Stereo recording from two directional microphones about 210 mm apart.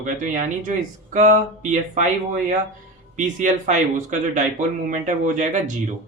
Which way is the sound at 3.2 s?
35° right (ahead or behind).